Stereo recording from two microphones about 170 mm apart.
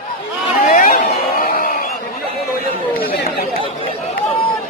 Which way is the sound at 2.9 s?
65° left (ahead or behind).